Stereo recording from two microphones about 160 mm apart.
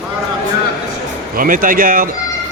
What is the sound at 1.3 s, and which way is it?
Speech, 60° right (ahead or behind).